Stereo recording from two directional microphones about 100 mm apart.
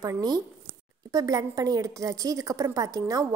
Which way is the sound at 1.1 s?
35° right (ahead or behind).